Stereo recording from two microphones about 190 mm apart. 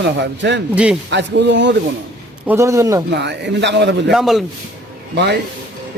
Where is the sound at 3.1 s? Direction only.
65° right (ahead or behind).